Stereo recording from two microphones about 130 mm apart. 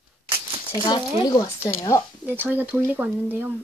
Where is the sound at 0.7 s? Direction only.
35° left (ahead or behind).